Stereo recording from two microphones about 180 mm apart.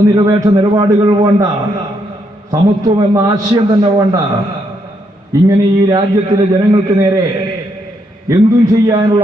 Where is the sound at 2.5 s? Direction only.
20° right (ahead or behind).